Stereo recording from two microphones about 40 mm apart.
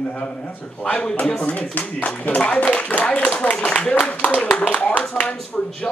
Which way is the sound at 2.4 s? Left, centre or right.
Left.